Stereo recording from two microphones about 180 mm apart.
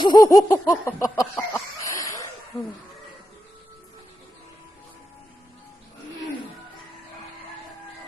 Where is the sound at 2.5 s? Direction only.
Centre (ahead or behind).